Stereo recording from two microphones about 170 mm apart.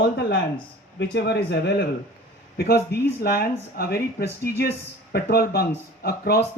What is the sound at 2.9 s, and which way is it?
Speech, 65° left (ahead or behind).